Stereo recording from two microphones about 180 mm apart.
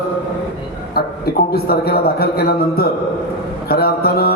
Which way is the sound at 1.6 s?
60° left (ahead or behind).